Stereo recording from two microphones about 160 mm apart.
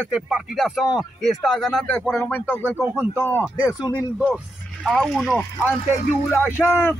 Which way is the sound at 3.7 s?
20° left (ahead or behind).